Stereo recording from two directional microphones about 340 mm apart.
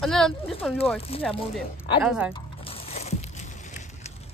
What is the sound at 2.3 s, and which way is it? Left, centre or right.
Music, centre.